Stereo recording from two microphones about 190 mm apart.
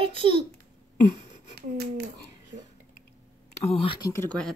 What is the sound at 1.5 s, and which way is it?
Speech, 55° right (ahead or behind).